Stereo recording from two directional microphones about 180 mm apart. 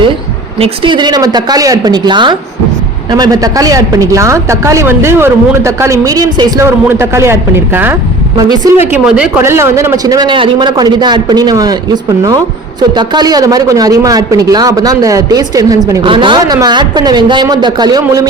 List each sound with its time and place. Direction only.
0.6 s a man's voice: 30° right (ahead or behind)
13.0 s a man's voice: 20° right (ahead or behind)